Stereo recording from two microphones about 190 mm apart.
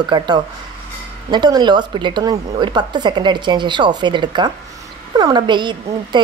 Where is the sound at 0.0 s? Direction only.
25° right (ahead or behind).